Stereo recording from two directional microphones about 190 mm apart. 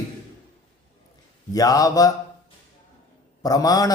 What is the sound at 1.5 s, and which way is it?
Speech, 20° left (ahead or behind).